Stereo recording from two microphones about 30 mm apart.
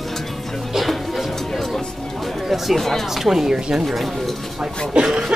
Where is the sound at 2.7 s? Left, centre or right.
Centre.